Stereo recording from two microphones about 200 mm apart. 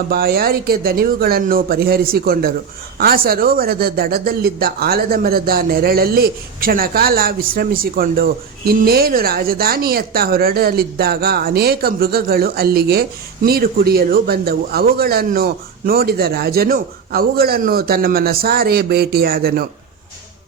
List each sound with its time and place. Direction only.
0.1 s speech: 50° right (ahead or behind)